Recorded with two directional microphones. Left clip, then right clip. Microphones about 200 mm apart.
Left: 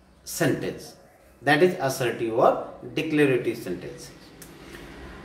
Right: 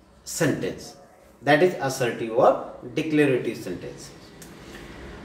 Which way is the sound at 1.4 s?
15° left (ahead or behind).